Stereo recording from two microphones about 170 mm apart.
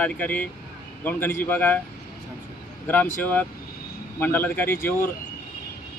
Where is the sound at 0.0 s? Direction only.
10° left (ahead or behind).